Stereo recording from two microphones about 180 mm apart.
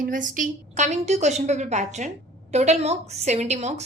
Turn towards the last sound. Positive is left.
turn(degrees=-40)  # may be behind; listen again after turning